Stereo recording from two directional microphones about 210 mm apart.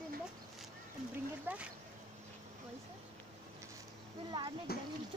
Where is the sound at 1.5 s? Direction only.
10° right (ahead or behind).